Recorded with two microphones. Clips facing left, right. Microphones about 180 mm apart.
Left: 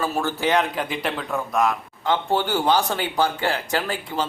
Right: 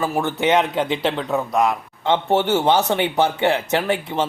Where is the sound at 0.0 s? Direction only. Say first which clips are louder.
Right 3 dB; 20° right (ahead or behind).